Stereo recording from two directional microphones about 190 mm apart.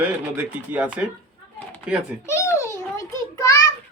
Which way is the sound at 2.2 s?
15° left (ahead or behind).